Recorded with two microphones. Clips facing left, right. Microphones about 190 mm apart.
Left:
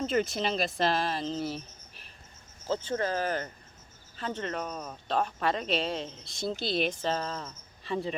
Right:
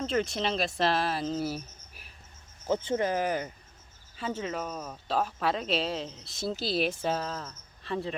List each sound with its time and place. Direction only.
0.0 s speech: 5° left (ahead or behind)